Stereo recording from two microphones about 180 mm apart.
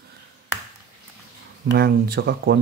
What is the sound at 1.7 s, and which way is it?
Speech, 65° right (ahead or behind).